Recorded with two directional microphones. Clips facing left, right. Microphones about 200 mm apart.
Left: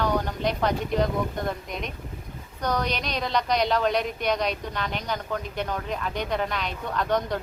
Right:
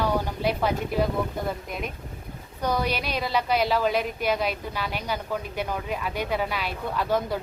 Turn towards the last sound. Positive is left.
turn(degrees=-5)  # may be behind; listen again after turning